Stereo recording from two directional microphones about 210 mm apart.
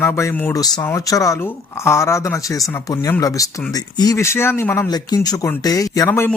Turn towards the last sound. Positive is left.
turn(degrees=10)  # may be behind; listen again after turning